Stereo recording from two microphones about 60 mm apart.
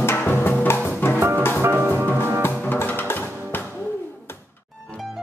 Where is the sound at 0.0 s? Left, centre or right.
Left.